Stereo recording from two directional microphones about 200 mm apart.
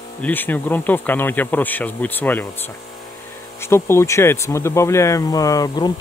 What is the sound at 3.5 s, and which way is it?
Speech, 10° left (ahead or behind).